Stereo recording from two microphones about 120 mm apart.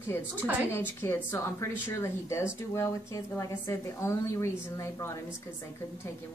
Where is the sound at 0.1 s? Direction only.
20° left (ahead or behind).